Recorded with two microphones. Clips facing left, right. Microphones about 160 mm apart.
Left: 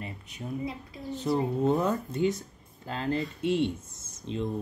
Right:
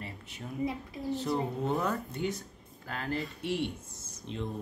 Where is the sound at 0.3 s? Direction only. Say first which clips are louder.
Left 5 dB; 20° left (ahead or behind).